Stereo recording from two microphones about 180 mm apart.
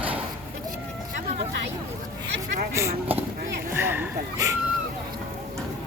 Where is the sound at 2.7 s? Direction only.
15° right (ahead or behind).